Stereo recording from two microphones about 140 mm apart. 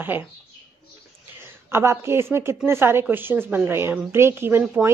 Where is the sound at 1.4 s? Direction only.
15° right (ahead or behind).